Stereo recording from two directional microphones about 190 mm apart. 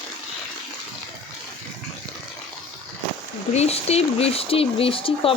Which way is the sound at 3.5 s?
35° left (ahead or behind).